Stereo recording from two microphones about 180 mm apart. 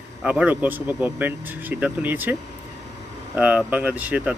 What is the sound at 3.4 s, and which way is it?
Speech, 10° right (ahead or behind).